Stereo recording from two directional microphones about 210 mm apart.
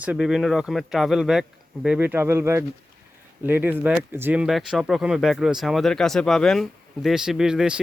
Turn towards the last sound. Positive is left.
turn(degrees=-5)  # may be behind; listen again after turning